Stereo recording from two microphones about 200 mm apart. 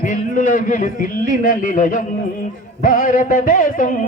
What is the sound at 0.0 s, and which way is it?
A man's voice, 40° left (ahead or behind).